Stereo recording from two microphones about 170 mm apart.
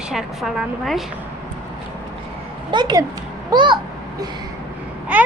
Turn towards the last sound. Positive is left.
turn(degrees=-10)  # may be behind; listen again after turning